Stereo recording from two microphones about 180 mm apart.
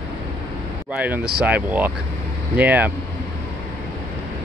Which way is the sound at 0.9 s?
10° right (ahead or behind).